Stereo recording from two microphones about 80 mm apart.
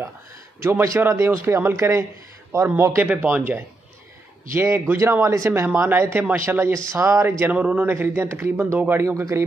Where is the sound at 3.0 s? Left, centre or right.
Centre; by 7.4 s right.